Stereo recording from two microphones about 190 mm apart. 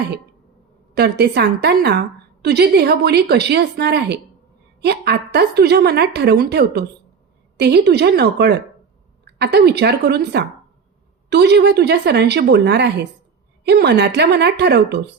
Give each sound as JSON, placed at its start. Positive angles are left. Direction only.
{"t": 0.9, "sound": "a woman's voice", "side_deg": -60}